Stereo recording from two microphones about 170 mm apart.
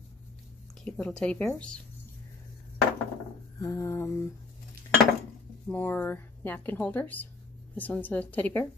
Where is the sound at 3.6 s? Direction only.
20° left (ahead or behind).